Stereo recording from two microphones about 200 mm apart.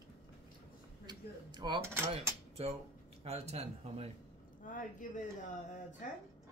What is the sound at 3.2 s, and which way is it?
Speech, 30° right (ahead or behind).